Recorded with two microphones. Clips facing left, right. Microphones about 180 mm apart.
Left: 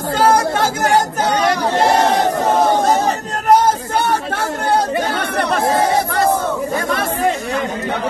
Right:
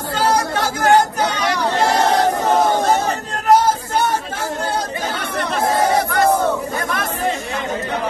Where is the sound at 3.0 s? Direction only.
50° left (ahead or behind).